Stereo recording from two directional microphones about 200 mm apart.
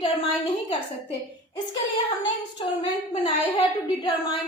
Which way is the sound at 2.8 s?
25° left (ahead or behind).